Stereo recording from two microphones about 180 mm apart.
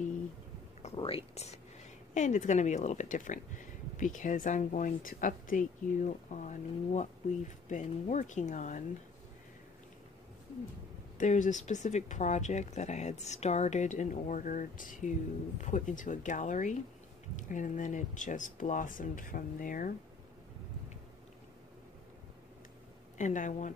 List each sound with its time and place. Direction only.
0.9 s whispering: 30° left (ahead or behind)
2.1 s speech: 40° left (ahead or behind)
11.1 s speech: 45° left (ahead or behind)
23.1 s speech: 45° left (ahead or behind)